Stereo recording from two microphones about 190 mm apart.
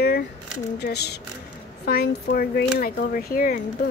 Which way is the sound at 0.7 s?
60° left (ahead or behind).